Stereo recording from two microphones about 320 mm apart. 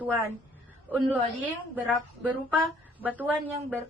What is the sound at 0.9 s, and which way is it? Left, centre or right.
A woman's voice, centre.